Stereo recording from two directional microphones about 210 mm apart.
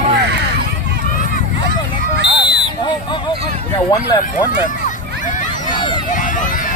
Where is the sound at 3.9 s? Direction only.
20° left (ahead or behind).